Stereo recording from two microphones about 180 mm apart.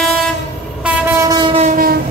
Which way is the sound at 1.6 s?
45° right (ahead or behind).